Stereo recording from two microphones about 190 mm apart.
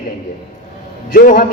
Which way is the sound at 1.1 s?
45° left (ahead or behind).